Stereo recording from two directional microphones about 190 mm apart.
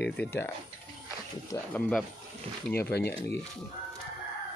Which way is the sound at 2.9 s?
60° left (ahead or behind).